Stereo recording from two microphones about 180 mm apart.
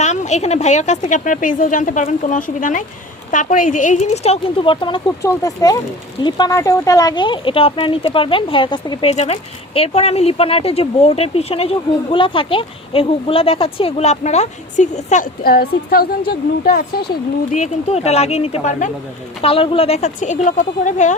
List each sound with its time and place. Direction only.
0.0 s a woman's voice: 40° left (ahead or behind); by 16.7 s 60° left (ahead or behind)
17.5 s speech: 40° left (ahead or behind)
19.4 s speech: 30° left (ahead or behind)